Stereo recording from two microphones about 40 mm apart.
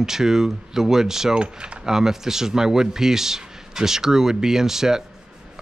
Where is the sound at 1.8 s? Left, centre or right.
Centre.